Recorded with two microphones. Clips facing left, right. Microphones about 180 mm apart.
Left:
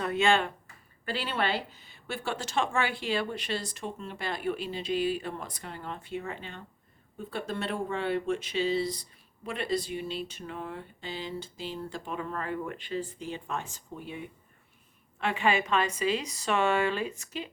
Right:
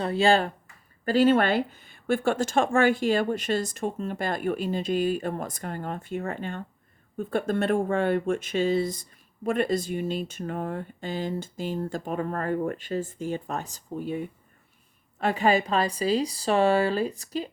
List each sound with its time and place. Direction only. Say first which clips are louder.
0.0 s speech: right 4 dB; 30° right (ahead or behind)